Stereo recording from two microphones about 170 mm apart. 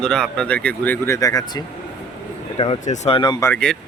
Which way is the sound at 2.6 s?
40° left (ahead or behind).